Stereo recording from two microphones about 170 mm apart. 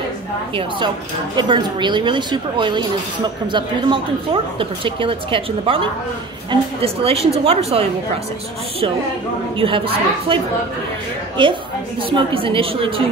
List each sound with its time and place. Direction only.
0.6 s a woman's voice: 25° right (ahead or behind)
9.6 s a woman's voice: 30° right (ahead or behind)